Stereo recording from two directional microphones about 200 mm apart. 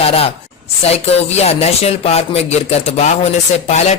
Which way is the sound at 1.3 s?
30° left (ahead or behind).